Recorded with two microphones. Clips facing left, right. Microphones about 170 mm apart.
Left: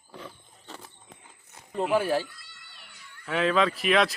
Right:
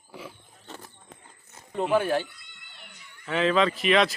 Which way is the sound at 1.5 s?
Centre (ahead or behind).